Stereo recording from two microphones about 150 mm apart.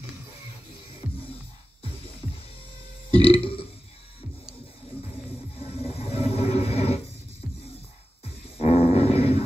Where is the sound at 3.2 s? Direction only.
40° left (ahead or behind).